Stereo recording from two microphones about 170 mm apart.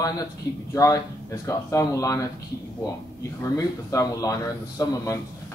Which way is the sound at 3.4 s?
20° left (ahead or behind).